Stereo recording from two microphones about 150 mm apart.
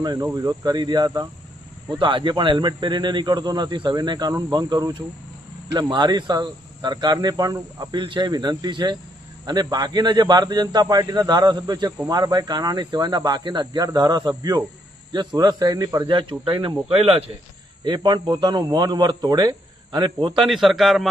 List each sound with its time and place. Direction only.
0.0 s speech: 25° right (ahead or behind)
16.5 s speech: 35° right (ahead or behind)
17.8 s speech: 30° right (ahead or behind)
20.4 s a man's voice: centre (ahead or behind)